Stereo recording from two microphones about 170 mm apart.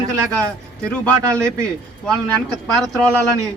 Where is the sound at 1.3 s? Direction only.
15° right (ahead or behind).